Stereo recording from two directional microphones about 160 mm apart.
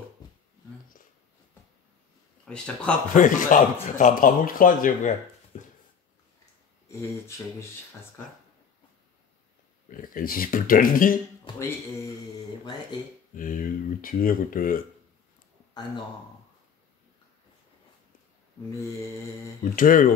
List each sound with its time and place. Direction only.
2.4 s speech: 5° left (ahead or behind)
3.2 s speech: 55° left (ahead or behind)
5.5 s a sound: 50° left (ahead or behind)
9.8 s speech: 60° left (ahead or behind)
12.9 s speech: 25° left (ahead or behind)
13.4 s speech: 55° left (ahead or behind)
19.6 s speech: 55° left (ahead or behind)